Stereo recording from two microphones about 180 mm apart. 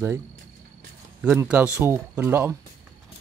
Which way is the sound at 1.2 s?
5° right (ahead or behind).